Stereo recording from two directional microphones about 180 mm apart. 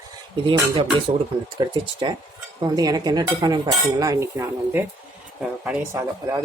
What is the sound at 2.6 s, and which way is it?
Cutlery, 20° right (ahead or behind).